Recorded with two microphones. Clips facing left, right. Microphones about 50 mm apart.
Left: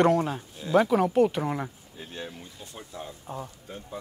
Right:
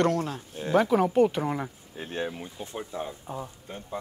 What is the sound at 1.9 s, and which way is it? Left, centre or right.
Speech, right.